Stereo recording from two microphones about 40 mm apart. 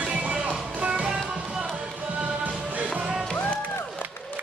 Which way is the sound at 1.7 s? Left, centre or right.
Right.